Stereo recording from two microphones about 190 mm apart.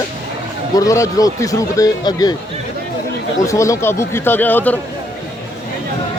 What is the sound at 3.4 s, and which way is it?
Speech, 15° left (ahead or behind).